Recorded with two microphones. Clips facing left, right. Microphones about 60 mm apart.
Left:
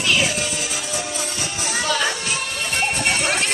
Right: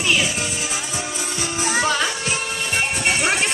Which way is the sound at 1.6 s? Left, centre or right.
Right.